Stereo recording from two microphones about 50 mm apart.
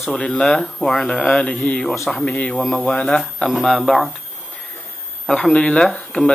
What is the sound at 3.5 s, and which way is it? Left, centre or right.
Speech, centre.